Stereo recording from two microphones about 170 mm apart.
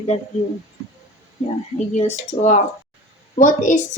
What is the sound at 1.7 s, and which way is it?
A woman's voice, 45° left (ahead or behind).